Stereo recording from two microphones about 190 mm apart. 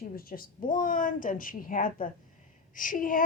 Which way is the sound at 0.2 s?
50° left (ahead or behind).